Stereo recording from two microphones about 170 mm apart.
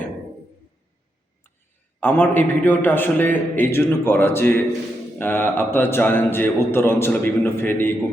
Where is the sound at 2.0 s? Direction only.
10° left (ahead or behind).